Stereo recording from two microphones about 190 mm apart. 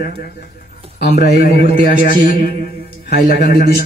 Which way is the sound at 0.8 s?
30° right (ahead or behind).